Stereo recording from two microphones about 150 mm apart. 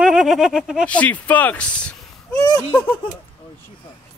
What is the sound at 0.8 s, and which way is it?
Speech, 10° left (ahead or behind).